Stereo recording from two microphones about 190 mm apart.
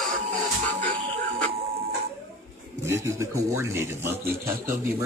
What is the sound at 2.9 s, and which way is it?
Speech, 15° right (ahead or behind).